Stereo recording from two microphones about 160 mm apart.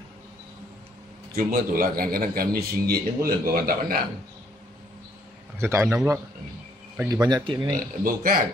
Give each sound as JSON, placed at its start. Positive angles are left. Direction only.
{"t": 1.3, "sound": "a man's voice", "side_deg": -65}
{"t": 5.6, "sound": "a man's voice", "side_deg": -15}
{"t": 7.7, "sound": "speech", "side_deg": -60}